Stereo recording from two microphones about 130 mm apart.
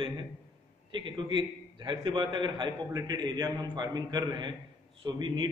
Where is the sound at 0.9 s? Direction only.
40° right (ahead or behind).